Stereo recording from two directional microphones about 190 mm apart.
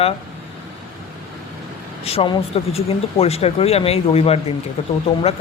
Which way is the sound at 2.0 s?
30° left (ahead or behind).